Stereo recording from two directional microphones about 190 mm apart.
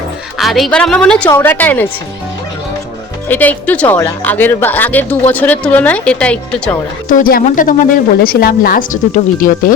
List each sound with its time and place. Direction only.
0.3 s a woman's voice: centre (ahead or behind)
3.2 s a woman's voice: 10° left (ahead or behind)
7.1 s a woman's voice: 45° left (ahead or behind)